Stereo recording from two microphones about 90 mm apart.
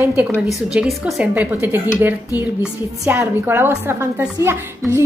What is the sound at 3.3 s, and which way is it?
A woman's voice, 25° right (ahead or behind).